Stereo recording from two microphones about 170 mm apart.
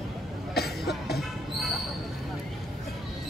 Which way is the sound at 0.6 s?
70° left (ahead or behind).